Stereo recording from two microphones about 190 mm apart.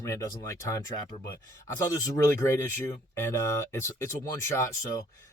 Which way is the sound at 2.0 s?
15° left (ahead or behind).